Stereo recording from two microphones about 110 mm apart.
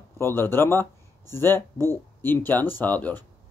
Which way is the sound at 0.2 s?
20° left (ahead or behind).